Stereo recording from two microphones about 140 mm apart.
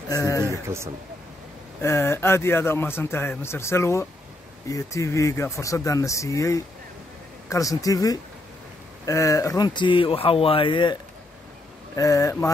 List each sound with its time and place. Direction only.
0.1 s a sound: 25° left (ahead or behind)
1.8 s a man's voice: 20° left (ahead or behind); by 11.0 s 35° left (ahead or behind)
11.9 s speech: 25° left (ahead or behind)